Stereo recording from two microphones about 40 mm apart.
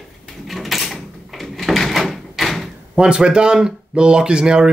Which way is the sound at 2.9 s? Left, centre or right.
Right.